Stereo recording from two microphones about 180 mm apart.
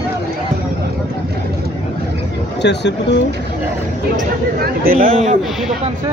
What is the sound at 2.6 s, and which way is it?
Speech, 70° left (ahead or behind).